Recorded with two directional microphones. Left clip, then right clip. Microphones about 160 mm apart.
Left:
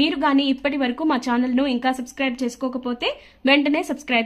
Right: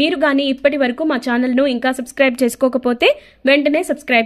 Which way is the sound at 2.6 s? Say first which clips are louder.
Right 12 dB; 45° right (ahead or behind).